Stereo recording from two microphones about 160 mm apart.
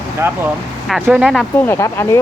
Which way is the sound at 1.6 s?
15° left (ahead or behind).